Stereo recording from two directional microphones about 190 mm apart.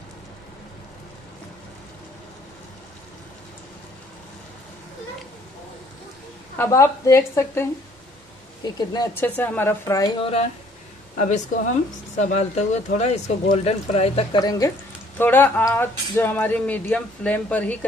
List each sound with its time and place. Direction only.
6.6 s speech: 15° left (ahead or behind)
8.6 s speech: 20° left (ahead or behind)
10.2 s speech: 35° left (ahead or behind)
14.4 s speech: 20° left (ahead or behind)